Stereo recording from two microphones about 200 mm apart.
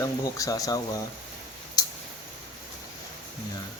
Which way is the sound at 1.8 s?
20° left (ahead or behind).